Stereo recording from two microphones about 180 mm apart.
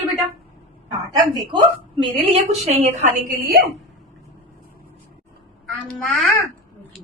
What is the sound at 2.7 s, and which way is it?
Speech, 45° right (ahead or behind).